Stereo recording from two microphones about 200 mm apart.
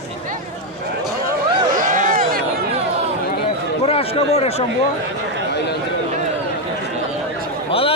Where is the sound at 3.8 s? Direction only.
30° left (ahead or behind).